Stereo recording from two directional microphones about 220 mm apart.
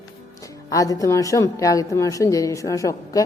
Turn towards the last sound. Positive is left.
turn(degrees=15)  # may be behind; listen again after turning